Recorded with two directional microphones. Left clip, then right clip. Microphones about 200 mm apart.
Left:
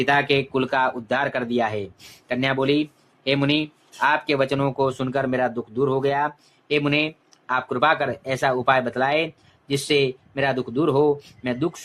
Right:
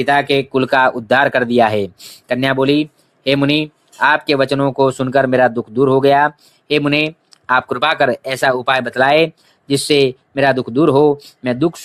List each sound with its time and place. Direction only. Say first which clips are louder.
0.0 s speech: right 6 dB; 30° right (ahead or behind)